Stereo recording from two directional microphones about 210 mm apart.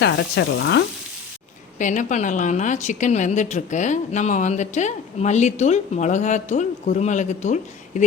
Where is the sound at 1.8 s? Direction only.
35° left (ahead or behind).